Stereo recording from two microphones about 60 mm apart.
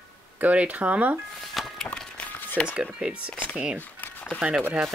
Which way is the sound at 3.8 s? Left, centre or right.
Left.